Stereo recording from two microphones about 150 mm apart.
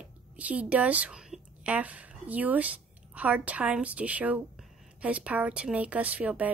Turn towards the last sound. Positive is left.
turn(degrees=-10)  # may be behind; listen again after turning